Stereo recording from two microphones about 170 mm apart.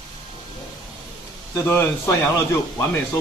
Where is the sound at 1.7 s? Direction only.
15° left (ahead or behind).